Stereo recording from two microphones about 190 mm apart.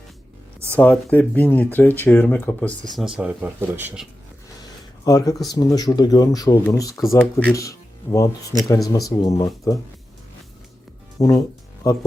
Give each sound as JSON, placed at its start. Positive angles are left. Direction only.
{"t": 0.8, "sound": "speech", "side_deg": 5}
{"t": 5.0, "sound": "speech", "side_deg": 20}
{"t": 11.2, "sound": "speech", "side_deg": 20}